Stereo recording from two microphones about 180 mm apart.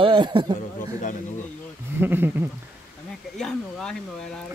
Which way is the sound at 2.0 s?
10° right (ahead or behind).